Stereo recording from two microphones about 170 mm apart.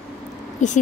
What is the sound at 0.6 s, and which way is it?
Speech, 45° left (ahead or behind).